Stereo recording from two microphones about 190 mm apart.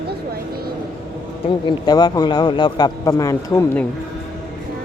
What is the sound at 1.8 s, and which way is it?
Speech, 20° left (ahead or behind).